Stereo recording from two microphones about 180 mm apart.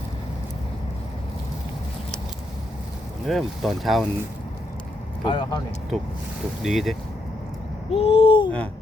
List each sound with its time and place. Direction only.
3.2 s speech: centre (ahead or behind)
5.2 s speech: 25° left (ahead or behind)
6.6 s speech: centre (ahead or behind)
7.9 s babbling: 35° left (ahead or behind)